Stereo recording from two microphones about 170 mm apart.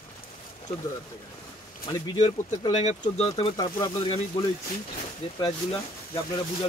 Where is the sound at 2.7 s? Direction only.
40° left (ahead or behind).